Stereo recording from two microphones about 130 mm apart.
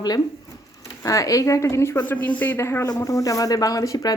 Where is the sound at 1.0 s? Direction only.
25° left (ahead or behind).